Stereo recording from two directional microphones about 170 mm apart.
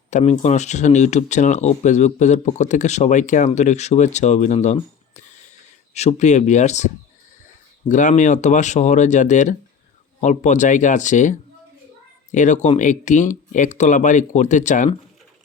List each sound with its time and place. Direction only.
0.1 s speech: 40° left (ahead or behind)
5.9 s speech: 40° left (ahead or behind)